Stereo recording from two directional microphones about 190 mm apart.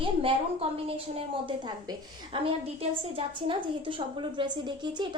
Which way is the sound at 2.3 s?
30° right (ahead or behind).